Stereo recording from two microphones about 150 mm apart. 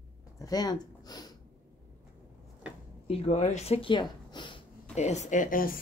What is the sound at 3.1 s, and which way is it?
Speech, 45° left (ahead or behind).